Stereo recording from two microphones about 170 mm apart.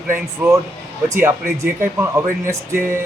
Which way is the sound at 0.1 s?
15° right (ahead or behind).